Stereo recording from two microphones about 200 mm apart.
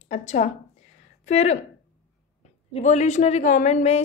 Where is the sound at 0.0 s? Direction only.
35° left (ahead or behind).